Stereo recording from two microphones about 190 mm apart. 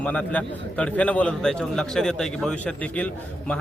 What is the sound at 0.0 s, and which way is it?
A man's voice, 5° left (ahead or behind).